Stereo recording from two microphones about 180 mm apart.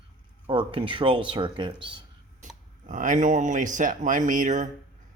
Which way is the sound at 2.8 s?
45° right (ahead or behind).